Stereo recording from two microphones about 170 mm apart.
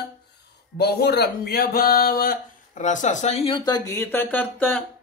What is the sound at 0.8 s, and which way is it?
Speech, 75° left (ahead or behind).